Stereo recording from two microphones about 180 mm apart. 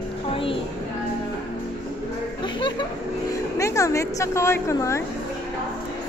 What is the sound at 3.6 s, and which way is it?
A woman's voice, 15° left (ahead or behind).